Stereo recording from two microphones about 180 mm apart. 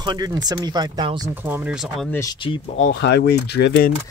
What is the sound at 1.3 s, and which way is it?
Speech, 10° right (ahead or behind).